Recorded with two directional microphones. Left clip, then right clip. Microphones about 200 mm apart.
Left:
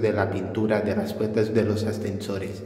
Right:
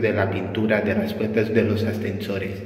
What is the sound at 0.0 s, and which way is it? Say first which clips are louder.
A man's voice: right 2 dB; 15° left (ahead or behind).